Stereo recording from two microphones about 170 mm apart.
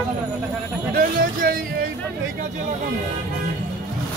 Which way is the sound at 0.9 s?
60° right (ahead or behind).